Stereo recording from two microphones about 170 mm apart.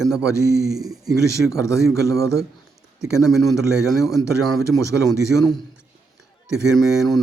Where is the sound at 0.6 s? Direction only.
20° right (ahead or behind).